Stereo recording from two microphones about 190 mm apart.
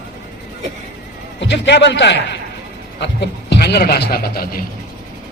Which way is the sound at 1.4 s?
65° left (ahead or behind).